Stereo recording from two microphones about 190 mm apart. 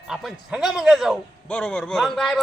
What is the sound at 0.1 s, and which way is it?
A man's voice, centre (ahead or behind).